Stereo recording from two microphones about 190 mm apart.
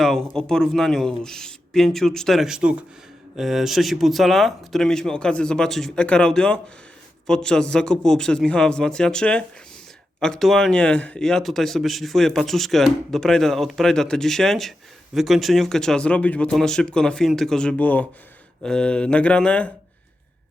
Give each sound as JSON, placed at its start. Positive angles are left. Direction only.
{"t": 0.0, "sound": "speech", "side_deg": 0}